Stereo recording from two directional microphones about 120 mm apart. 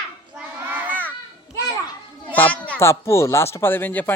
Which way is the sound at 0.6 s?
15° right (ahead or behind).